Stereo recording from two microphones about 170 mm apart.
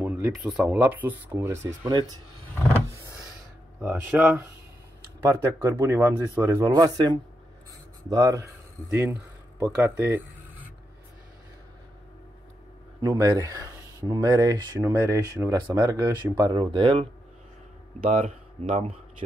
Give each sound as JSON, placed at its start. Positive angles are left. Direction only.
{"t": 0.0, "sound": "speech", "side_deg": -5}
{"t": 3.8, "sound": "speech", "side_deg": -15}
{"t": 9.8, "sound": "speech", "side_deg": -15}
{"t": 13.0, "sound": "speech", "side_deg": -25}
{"t": 18.1, "sound": "speech", "side_deg": -45}